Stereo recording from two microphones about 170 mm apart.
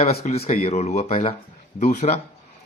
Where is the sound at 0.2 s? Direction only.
40° left (ahead or behind).